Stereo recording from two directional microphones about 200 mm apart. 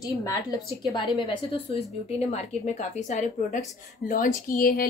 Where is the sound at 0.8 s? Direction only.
20° left (ahead or behind).